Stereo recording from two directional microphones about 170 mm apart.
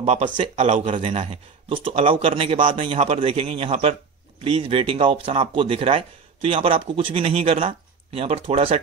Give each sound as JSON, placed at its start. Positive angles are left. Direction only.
{"t": 0.0, "sound": "speech", "side_deg": -40}